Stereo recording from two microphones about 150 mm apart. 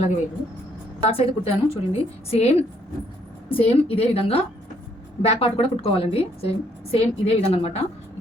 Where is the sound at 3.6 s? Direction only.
40° left (ahead or behind).